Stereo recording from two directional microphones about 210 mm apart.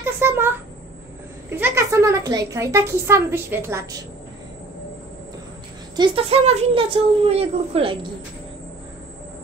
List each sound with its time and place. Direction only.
0.0 s a sound: 10° right (ahead or behind)
1.5 s a woman's voice: 10° right (ahead or behind)
5.9 s a child's voice: 25° right (ahead or behind)